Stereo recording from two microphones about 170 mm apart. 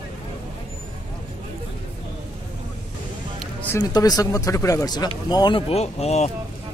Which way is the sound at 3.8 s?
25° left (ahead or behind).